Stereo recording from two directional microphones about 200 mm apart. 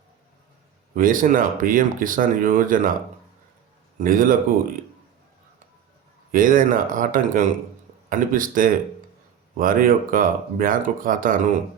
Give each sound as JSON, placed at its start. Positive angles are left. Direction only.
{"t": 0.9, "sound": "speech", "side_deg": -40}
{"t": 3.9, "sound": "speech", "side_deg": -45}
{"t": 6.3, "sound": "speech", "side_deg": -45}